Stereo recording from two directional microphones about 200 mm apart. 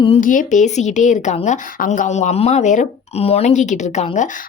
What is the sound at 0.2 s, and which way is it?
A woman's voice, 40° left (ahead or behind).